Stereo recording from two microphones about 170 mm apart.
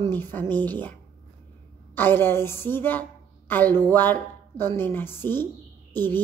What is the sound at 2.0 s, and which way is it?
A woman's voice, 10° left (ahead or behind).